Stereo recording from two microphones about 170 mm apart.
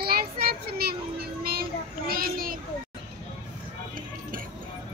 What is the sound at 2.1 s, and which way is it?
Children playing, 60° right (ahead or behind).